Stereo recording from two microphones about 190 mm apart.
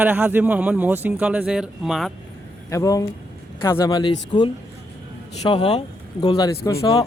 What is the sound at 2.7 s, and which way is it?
Speech, 15° left (ahead or behind).